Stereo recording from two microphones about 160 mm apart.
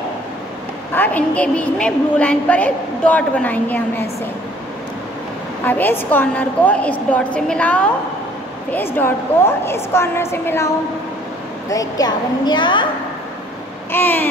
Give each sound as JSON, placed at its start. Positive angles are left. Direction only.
{"t": 0.9, "sound": "a woman's voice", "side_deg": 10}
{"t": 5.7, "sound": "a woman's voice", "side_deg": 10}
{"t": 11.7, "sound": "a woman's voice", "side_deg": 20}
{"t": 13.9, "sound": "a woman's voice", "side_deg": 15}